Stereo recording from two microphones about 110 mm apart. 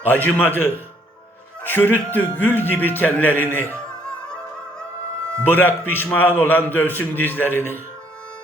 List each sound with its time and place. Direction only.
0.0 s a man's voice: 15° left (ahead or behind)
5.5 s a man's voice: 15° left (ahead or behind)